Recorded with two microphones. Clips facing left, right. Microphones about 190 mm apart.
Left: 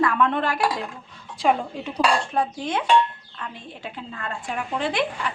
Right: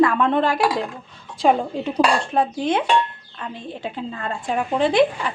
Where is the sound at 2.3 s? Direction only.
25° right (ahead or behind).